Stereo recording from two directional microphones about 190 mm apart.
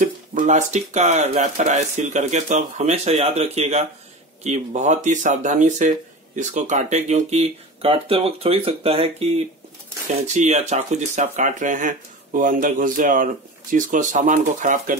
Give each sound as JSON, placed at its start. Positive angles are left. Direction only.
{"t": 0.0, "sound": "speech", "side_deg": -45}